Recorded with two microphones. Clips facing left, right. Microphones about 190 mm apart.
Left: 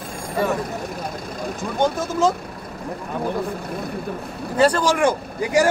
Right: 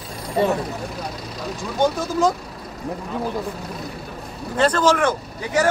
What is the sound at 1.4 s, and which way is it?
Speech, 50° left (ahead or behind).